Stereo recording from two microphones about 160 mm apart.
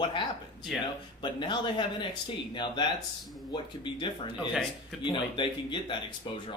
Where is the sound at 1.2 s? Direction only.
30° left (ahead or behind).